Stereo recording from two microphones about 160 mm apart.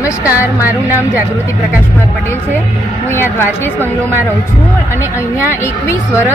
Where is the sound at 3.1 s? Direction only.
15° left (ahead or behind).